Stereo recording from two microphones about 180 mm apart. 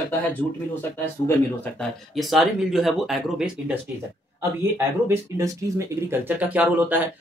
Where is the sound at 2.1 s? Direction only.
Centre (ahead or behind).